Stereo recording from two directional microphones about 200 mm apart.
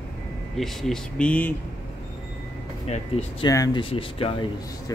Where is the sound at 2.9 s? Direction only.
30° left (ahead or behind).